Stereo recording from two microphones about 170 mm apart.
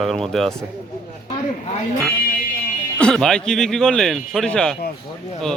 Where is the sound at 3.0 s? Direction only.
5° left (ahead or behind).